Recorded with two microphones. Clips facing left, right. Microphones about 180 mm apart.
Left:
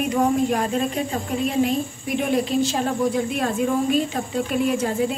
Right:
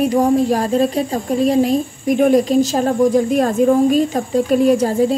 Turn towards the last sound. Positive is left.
turn(degrees=-35)  # may be behind; listen again after turning